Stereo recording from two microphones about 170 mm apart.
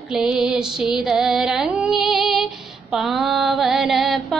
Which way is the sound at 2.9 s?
Centre (ahead or behind).